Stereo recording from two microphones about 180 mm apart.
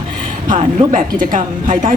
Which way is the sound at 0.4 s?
45° right (ahead or behind).